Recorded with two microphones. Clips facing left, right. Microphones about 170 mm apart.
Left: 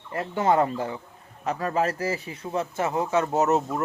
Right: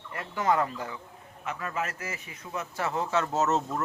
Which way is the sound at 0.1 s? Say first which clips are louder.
Left 5 dB; 30° left (ahead or behind).